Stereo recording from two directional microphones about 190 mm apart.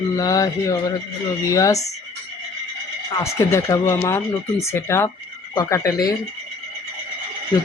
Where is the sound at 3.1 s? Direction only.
15° left (ahead or behind).